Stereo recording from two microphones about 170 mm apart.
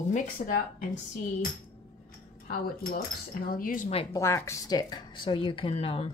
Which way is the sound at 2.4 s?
60° left (ahead or behind).